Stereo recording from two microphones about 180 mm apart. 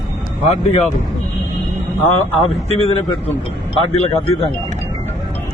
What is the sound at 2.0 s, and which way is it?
A man's voice, 35° left (ahead or behind).